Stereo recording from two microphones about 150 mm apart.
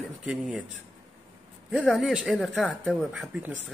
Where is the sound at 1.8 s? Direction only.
Centre (ahead or behind).